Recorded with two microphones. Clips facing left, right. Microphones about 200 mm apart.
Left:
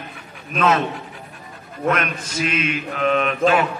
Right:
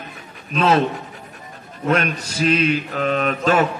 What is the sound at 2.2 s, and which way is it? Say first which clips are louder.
A man's voice: right 5 dB; 35° right (ahead or behind).